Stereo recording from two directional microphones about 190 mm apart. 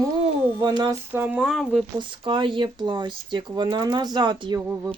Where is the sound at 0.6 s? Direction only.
20° right (ahead or behind).